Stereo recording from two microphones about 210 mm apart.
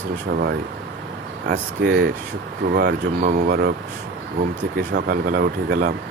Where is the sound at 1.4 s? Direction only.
50° right (ahead or behind).